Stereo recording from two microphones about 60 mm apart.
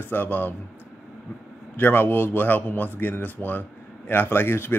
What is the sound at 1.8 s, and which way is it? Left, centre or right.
A man's voice, left.